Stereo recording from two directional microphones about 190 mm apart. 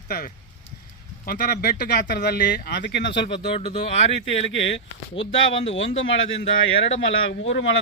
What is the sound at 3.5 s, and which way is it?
Speech, 30° left (ahead or behind).